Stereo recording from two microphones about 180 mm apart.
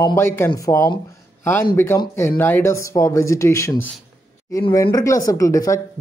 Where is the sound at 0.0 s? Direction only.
15° left (ahead or behind).